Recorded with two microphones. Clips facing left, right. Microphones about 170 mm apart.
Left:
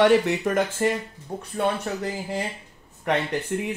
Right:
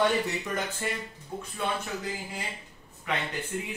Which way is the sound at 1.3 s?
35° left (ahead or behind).